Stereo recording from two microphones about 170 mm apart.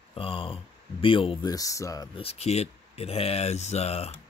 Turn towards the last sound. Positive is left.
turn(degrees=35)  # may be behind; listen again after turning